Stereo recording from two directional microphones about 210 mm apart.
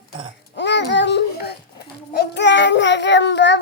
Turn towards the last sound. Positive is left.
turn(degrees=55)  # may be behind; listen again after turning